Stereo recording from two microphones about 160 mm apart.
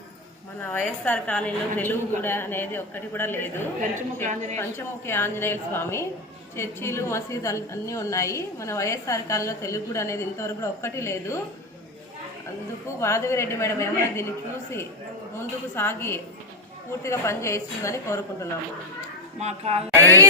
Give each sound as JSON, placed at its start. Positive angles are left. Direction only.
{"t": 0.6, "sound": "a woman's voice", "side_deg": 10}
{"t": 3.8, "sound": "a woman's voice", "side_deg": -50}
{"t": 5.0, "sound": "a woman's voice", "side_deg": 15}
{"t": 13.0, "sound": "a woman's voice", "side_deg": 15}
{"t": 19.4, "sound": "a woman's voice", "side_deg": -45}